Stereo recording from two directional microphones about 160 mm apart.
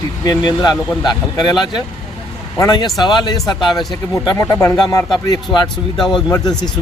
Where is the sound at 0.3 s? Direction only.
25° left (ahead or behind).